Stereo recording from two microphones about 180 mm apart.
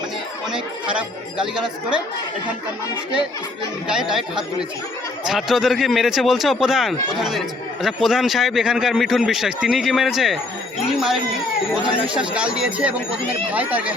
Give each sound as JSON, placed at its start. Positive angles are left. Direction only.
{"t": 0.9, "sound": "a man's voice", "side_deg": -5}
{"t": 5.2, "sound": "a man's voice", "side_deg": 0}